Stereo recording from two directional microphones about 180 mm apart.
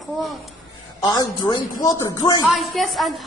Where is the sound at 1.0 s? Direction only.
20° left (ahead or behind).